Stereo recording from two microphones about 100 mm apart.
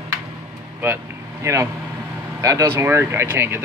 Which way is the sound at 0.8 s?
25° right (ahead or behind).